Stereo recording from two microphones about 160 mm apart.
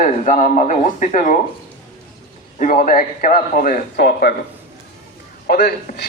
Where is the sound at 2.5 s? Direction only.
55° left (ahead or behind); by 4.3 s 90° left.